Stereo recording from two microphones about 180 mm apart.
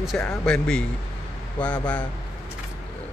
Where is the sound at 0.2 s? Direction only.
5° left (ahead or behind).